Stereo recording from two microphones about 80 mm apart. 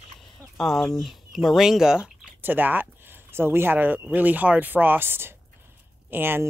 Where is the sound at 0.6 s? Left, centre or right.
Centre.